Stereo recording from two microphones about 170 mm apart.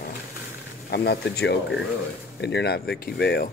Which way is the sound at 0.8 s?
70° left (ahead or behind).